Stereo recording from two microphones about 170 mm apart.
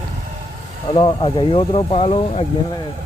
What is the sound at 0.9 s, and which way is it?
Speech, 30° left (ahead or behind).